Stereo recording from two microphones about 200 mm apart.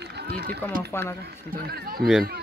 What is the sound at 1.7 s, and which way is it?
Speech, 50° right (ahead or behind).